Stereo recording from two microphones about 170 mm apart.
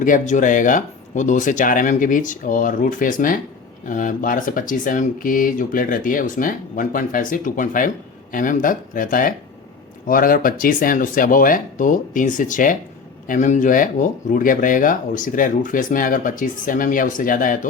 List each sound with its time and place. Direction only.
0.0 s speech: 50° left (ahead or behind)